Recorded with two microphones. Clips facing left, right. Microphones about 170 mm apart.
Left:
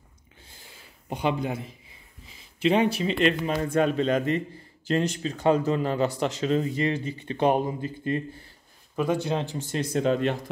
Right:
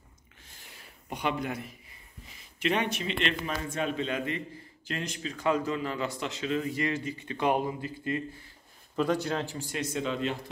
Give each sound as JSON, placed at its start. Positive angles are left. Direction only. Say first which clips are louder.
{"t": 0.5, "sound": "a sound", "louder": "left 1 dB", "side_deg": 30}
{"t": 2.6, "sound": "a man's voice", "louder": "left 7 dB", "side_deg": 30}
{"t": 3.6, "sound": "speech", "louder": "left 11 dB", "side_deg": 55}
{"t": 3.9, "sound": "a man's voice", "louder": "left 8 dB", "side_deg": 40}
{"t": 8.9, "sound": "speech", "louder": "left 2 dB", "side_deg": 15}
{"t": 9.9, "sound": "speech", "louder": "left 8 dB", "side_deg": 45}